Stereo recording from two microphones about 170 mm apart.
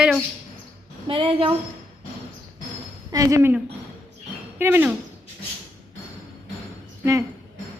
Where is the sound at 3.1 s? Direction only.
20° right (ahead or behind).